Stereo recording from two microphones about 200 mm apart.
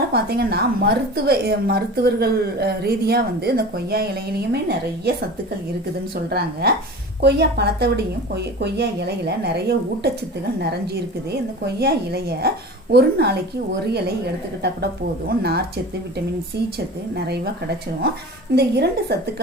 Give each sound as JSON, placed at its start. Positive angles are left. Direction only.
{"t": 0.1, "sound": "a woman's voice", "side_deg": -50}
{"t": 6.3, "sound": "a woman's voice", "side_deg": -50}
{"t": 11.3, "sound": "a woman's voice", "side_deg": -55}
{"t": 15.3, "sound": "a woman's voice", "side_deg": -55}
{"t": 17.2, "sound": "a woman's voice", "side_deg": -55}